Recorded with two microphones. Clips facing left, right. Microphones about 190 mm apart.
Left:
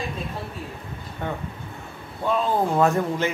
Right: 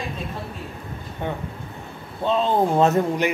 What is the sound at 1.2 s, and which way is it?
A man's voice, 15° right (ahead or behind).